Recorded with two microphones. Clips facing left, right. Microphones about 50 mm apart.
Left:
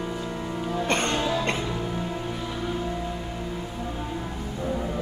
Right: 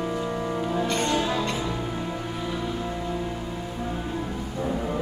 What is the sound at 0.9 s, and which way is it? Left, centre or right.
Music, left.